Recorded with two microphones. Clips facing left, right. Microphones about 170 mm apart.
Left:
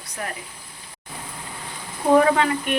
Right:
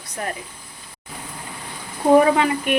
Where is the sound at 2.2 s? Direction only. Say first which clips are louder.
Right 2 dB; 10° right (ahead or behind).